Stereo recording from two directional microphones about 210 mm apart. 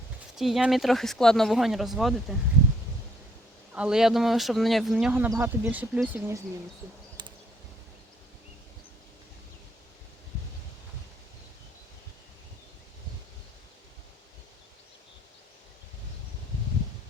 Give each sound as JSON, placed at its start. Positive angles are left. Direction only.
{"t": 0.3, "sound": "speech", "side_deg": 0}
{"t": 3.7, "sound": "speech", "side_deg": -5}
{"t": 7.2, "sound": "a sound", "side_deg": -20}